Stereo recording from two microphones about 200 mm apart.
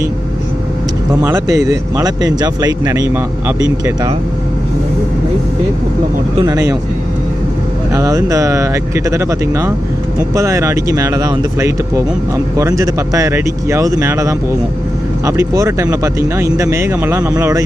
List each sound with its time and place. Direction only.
1.2 s speech: 15° right (ahead or behind)
6.4 s speech: 15° right (ahead or behind)
7.9 s speech: 15° right (ahead or behind)